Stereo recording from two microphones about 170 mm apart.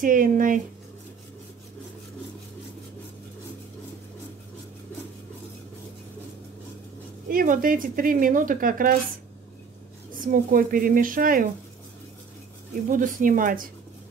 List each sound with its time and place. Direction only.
0.0 s speech: 55° right (ahead or behind)
7.2 s speech: 55° right (ahead or behind)
10.1 s speech: 55° right (ahead or behind)
12.9 s speech: 50° right (ahead or behind)